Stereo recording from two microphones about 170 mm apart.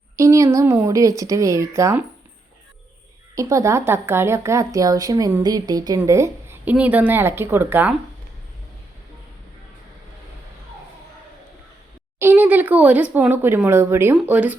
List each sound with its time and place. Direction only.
0.2 s a woman's voice: 20° right (ahead or behind)
3.3 s a woman's voice: 20° right (ahead or behind)
12.2 s speech: 10° right (ahead or behind)